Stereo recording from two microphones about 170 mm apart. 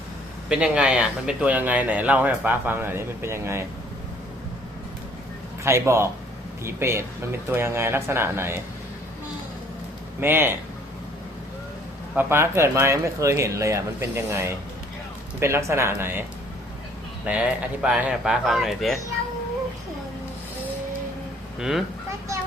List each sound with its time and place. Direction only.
0.4 s speech: 5° right (ahead or behind)
5.6 s speech: 15° right (ahead or behind)
10.2 s speech: 15° right (ahead or behind)
12.1 s speech: 15° right (ahead or behind)
17.2 s speech: 5° right (ahead or behind)
21.6 s speech: centre (ahead or behind)